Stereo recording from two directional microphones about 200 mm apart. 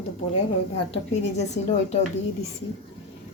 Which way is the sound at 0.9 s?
35° left (ahead or behind).